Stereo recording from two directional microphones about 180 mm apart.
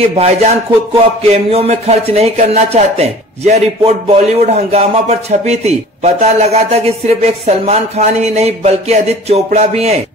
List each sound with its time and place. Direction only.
0.0 s speech: 35° right (ahead or behind)